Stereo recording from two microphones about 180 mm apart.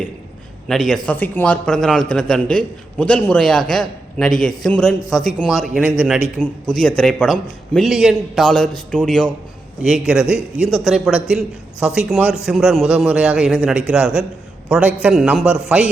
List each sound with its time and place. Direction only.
0.7 s a man's voice: centre (ahead or behind)